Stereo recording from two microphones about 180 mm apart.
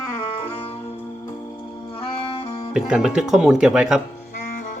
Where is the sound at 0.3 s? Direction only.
35° left (ahead or behind).